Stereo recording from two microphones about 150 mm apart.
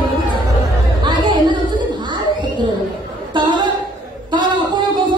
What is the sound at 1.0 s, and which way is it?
Chatter, 30° right (ahead or behind).